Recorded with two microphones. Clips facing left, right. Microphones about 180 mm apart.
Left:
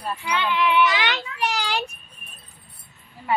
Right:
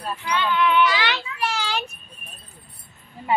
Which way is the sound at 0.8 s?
20° left (ahead or behind).